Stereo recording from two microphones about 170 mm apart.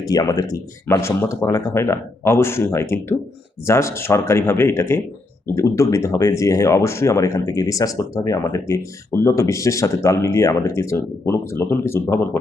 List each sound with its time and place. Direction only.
0.1 s speech: 20° left (ahead or behind)